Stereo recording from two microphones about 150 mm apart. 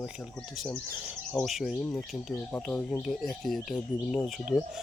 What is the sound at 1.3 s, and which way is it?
Speech, centre (ahead or behind).